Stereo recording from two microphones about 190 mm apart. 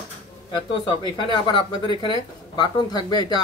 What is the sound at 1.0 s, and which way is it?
Speech, 25° left (ahead or behind).